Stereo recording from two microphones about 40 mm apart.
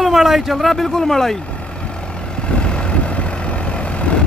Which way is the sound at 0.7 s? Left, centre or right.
Centre.